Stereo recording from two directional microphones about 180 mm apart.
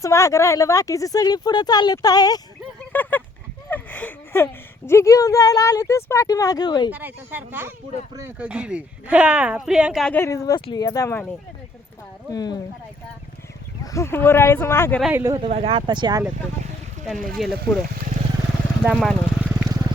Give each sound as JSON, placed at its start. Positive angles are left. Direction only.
{"t": 0.0, "sound": "speech", "side_deg": 15}
{"t": 2.9, "sound": "a sound", "side_deg": 10}
{"t": 4.9, "sound": "speech", "side_deg": 15}
{"t": 6.9, "sound": "speech", "side_deg": -10}
{"t": 10.2, "sound": "speech", "side_deg": 15}
{"t": 12.3, "sound": "speech", "side_deg": 20}
{"t": 13.8, "sound": "speech", "side_deg": 15}
{"t": 15.0, "sound": "speech", "side_deg": -15}
{"t": 15.4, "sound": "speech", "side_deg": -35}
{"t": 17.3, "sound": "speech", "side_deg": 0}
{"t": 18.8, "sound": "speech", "side_deg": 0}
{"t": 19.5, "sound": "vehicle", "side_deg": -10}